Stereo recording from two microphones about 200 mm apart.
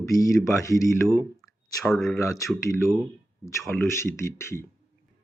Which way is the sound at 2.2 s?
15° left (ahead or behind).